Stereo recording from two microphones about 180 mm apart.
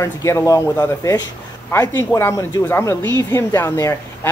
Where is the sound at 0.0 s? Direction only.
15° left (ahead or behind).